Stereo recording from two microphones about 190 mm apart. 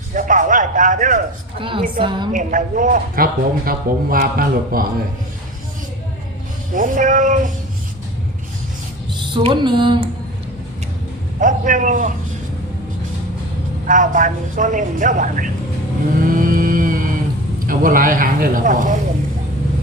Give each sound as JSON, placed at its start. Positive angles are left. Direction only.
{"t": 0.1, "sound": "a sound", "side_deg": -45}
{"t": 1.5, "sound": "a woman's voice", "side_deg": -25}
{"t": 2.3, "sound": "a man's voice", "side_deg": -40}
{"t": 6.7, "sound": "a man's voice", "side_deg": -45}
{"t": 9.1, "sound": "music", "side_deg": -25}
{"t": 11.3, "sound": "a man's voice", "side_deg": -40}
{"t": 13.8, "sound": "a man's voice", "side_deg": -40}
{"t": 16.2, "sound": "music", "side_deg": -50}
{"t": 17.7, "sound": "a man's voice", "side_deg": -45}